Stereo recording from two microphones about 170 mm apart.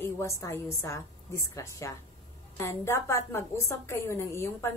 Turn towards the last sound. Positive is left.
turn(degrees=15)  # may be behind; listen again after turning